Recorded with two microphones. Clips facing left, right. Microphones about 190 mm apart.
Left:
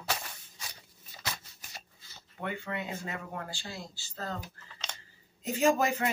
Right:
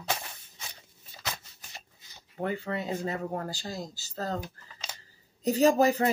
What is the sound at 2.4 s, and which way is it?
Speech, 35° right (ahead or behind).